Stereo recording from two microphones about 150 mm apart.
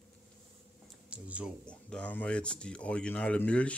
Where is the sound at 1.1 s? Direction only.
10° right (ahead or behind).